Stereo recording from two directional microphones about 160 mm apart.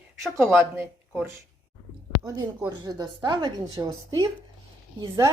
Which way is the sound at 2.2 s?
25° right (ahead or behind).